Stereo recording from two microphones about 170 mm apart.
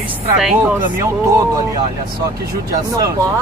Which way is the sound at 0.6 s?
15° right (ahead or behind).